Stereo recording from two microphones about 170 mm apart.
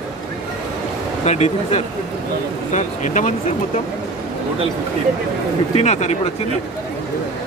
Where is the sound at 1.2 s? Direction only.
40° left (ahead or behind).